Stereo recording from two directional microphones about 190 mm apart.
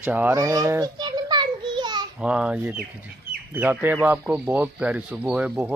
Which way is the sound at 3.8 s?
10° right (ahead or behind).